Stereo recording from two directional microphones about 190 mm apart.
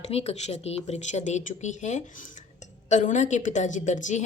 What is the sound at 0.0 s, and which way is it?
A woman's voice, 35° left (ahead or behind).